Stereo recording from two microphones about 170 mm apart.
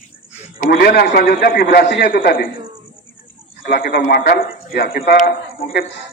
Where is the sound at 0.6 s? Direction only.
60° left (ahead or behind).